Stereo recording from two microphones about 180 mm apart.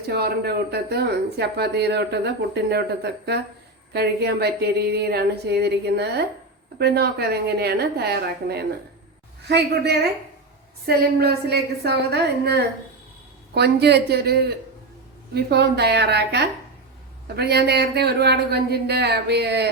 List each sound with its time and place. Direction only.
0.1 s speech: 65° right (ahead or behind)